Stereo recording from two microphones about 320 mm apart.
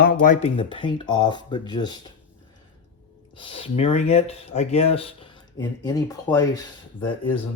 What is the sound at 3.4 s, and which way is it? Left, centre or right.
Speech, centre.